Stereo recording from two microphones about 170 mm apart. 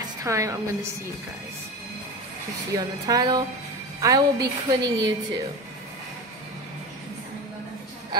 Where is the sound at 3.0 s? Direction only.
20° right (ahead or behind).